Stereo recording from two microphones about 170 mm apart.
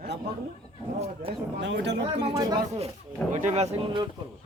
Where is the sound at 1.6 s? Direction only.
90° right.